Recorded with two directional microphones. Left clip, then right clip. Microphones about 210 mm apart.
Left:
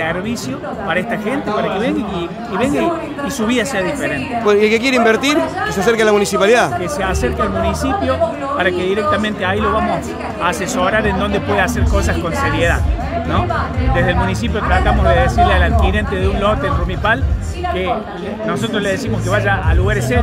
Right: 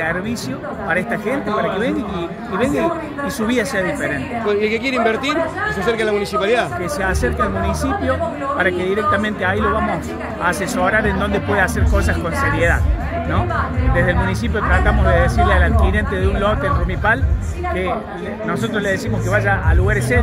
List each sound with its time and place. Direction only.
2.6 s speech: centre (ahead or behind)
4.5 s a man's voice: 30° left (ahead or behind)
7.8 s speech: centre (ahead or behind)
8.7 s a man's voice: 55° left (ahead or behind)
9.1 s speech: centre (ahead or behind)
14.5 s speech: centre (ahead or behind)
18.5 s speech: centre (ahead or behind)